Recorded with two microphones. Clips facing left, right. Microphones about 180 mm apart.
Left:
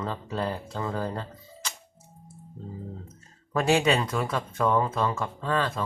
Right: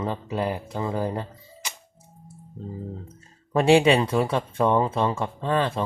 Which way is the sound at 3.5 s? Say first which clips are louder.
Right 5 dB; 25° right (ahead or behind).